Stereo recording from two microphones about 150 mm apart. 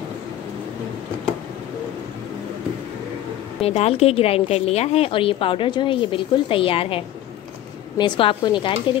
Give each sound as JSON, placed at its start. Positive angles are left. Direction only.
{"t": 3.6, "sound": "a woman's voice", "side_deg": 45}
{"t": 8.0, "sound": "a woman's voice", "side_deg": 35}